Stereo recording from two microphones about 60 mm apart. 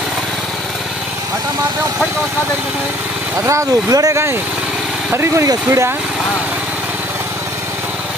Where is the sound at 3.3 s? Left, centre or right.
Right.